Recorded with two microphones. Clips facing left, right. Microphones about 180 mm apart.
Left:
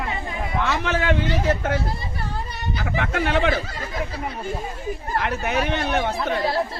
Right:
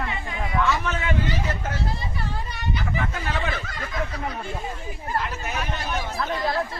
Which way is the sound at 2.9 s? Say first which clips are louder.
Left 9 dB; 75° left (ahead or behind).